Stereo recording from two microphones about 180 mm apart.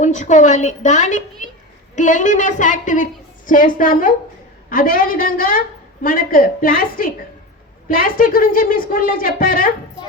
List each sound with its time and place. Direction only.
0.0 s a woman's voice: 40° left (ahead or behind)